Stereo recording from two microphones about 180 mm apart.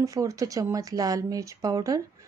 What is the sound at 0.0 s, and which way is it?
Speech, 20° right (ahead or behind).